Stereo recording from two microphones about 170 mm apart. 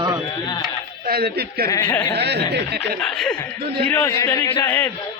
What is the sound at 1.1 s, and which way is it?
Speech, 65° right (ahead or behind).